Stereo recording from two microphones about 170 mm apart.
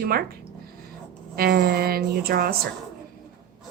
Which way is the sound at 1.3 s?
65° right (ahead or behind).